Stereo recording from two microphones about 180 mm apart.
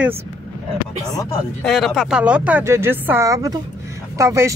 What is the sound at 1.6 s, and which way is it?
Speech, centre (ahead or behind).